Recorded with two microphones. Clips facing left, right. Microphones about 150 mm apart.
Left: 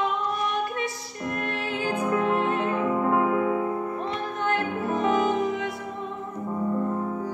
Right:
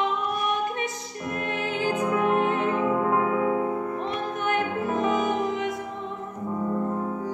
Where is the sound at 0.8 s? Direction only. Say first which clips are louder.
Even; 20° right (ahead or behind).